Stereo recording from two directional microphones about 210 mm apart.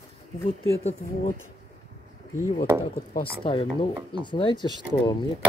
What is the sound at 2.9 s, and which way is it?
Speech, 45° left (ahead or behind).